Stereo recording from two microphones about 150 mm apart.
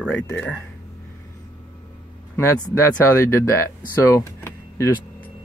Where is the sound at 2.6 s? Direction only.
20° left (ahead or behind).